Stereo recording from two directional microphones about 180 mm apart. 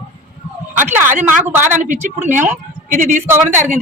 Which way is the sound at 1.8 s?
45° right (ahead or behind).